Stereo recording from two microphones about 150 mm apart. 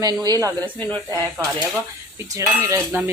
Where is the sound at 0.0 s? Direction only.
25° right (ahead or behind).